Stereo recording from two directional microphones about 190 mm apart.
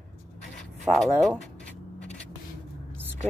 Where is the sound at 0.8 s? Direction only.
Centre (ahead or behind).